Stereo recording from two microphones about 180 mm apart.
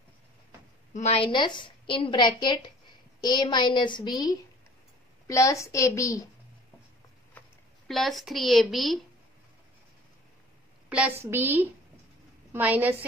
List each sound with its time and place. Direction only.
0.9 s a woman's voice: 35° left (ahead or behind); by 6.2 s 15° left (ahead or behind)
7.9 s a woman's voice: centre (ahead or behind)
10.9 s a woman's voice: 10° right (ahead or behind)